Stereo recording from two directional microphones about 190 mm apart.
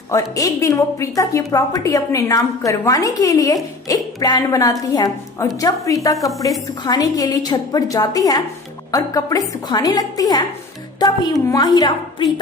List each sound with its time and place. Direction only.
0.1 s a woman's voice: 20° left (ahead or behind)
6.1 s a woman's voice: centre (ahead or behind)
6.8 s a woman's voice: 20° left (ahead or behind)
11.4 s a woman's voice: 20° left (ahead or behind)